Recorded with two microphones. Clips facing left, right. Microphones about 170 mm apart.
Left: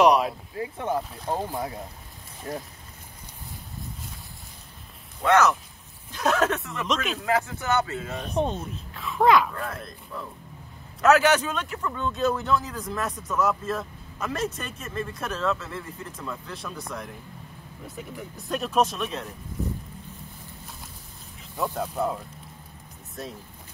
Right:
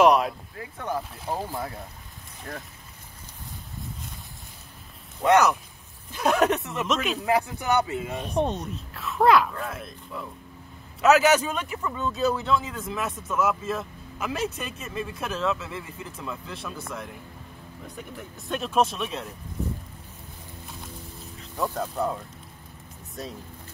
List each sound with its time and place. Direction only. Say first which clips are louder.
0.0 s a sound: even; centre (ahead or behind)
0.6 s speech: left 4 dB; 25° left (ahead or behind)
5.2 s speech: right 1 dB; 15° right (ahead or behind)
6.9 s a man's voice: right 1 dB; centre (ahead or behind)
7.2 s speech: right 1 dB; 15° right (ahead or behind)
8.1 s a man's voice: right 1 dB; centre (ahead or behind)
21.4 s speech: even; centre (ahead or behind)